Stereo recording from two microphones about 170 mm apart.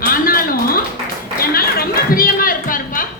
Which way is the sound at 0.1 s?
60° left (ahead or behind).